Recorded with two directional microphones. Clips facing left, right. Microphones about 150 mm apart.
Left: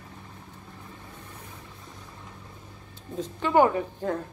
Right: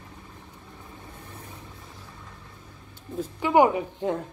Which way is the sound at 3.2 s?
10° right (ahead or behind).